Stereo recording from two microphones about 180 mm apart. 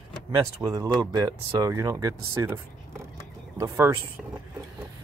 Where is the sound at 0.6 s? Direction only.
20° right (ahead or behind).